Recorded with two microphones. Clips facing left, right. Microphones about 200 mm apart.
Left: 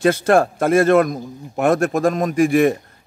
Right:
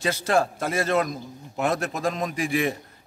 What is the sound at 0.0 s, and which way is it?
A man's voice, 55° left (ahead or behind).